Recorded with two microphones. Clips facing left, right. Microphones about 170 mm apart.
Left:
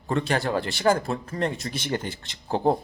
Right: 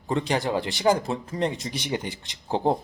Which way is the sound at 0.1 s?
15° right (ahead or behind).